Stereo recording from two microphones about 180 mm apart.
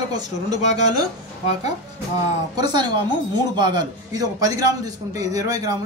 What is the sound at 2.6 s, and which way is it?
Speech, 25° right (ahead or behind).